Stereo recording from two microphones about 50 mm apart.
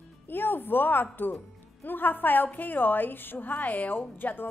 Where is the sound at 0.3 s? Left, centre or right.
Left.